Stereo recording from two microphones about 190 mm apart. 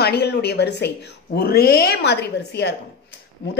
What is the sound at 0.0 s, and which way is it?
A woman's voice, 60° left (ahead or behind).